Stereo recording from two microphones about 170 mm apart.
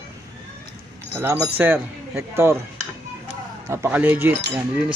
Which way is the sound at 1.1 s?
15° right (ahead or behind).